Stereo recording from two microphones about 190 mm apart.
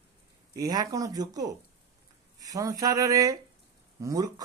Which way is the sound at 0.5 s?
20° right (ahead or behind).